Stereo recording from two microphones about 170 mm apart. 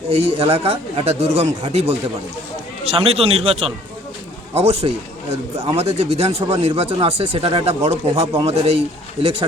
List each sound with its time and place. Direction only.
0.1 s speech: 35° right (ahead or behind)